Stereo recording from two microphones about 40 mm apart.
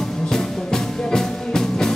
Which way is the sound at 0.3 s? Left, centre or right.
Centre.